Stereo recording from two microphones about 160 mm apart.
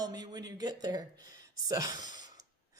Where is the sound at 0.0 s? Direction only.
25° right (ahead or behind).